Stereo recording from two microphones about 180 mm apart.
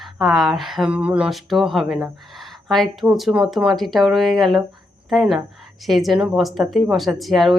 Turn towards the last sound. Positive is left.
turn(degrees=0)  # may be behind; listen again after turning